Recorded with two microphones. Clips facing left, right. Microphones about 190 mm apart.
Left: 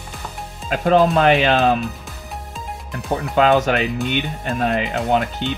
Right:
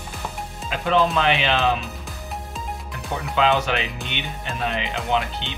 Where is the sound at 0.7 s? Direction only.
45° left (ahead or behind).